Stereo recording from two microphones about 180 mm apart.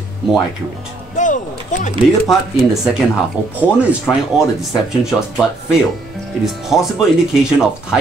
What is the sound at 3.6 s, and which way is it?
Speech, 5° right (ahead or behind).